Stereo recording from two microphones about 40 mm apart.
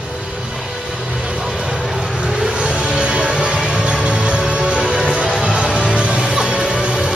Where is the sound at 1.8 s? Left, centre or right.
Centre.